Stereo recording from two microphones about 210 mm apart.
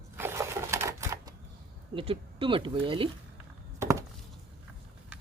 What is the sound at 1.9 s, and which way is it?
Speech, 25° right (ahead or behind).